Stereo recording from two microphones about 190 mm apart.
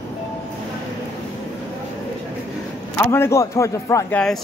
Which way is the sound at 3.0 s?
15° left (ahead or behind).